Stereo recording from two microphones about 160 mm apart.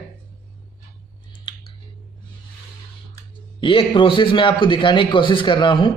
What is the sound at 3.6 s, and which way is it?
A man's voice, 30° left (ahead or behind).